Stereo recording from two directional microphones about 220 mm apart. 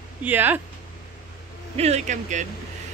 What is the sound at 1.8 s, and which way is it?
Speech, 30° right (ahead or behind).